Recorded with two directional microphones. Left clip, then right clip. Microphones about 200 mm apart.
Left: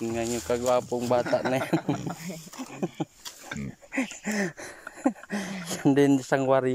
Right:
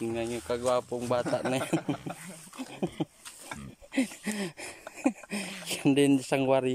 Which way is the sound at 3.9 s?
20° right (ahead or behind).